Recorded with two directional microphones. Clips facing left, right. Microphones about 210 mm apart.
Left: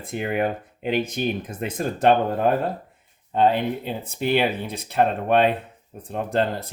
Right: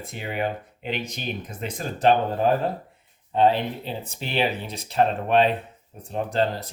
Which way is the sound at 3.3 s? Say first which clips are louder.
Left 1 dB; 50° left (ahead or behind).